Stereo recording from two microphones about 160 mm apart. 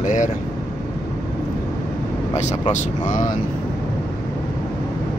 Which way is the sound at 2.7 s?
50° left (ahead or behind).